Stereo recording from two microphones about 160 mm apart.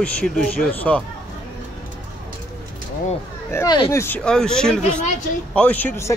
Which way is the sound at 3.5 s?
25° left (ahead or behind).